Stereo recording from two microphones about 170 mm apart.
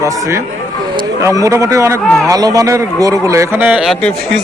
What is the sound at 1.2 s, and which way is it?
Speech, 20° right (ahead or behind).